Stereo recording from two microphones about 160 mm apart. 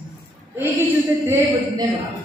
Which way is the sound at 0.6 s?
15° right (ahead or behind).